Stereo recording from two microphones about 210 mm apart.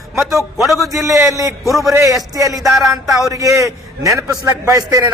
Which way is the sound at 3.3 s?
15° right (ahead or behind).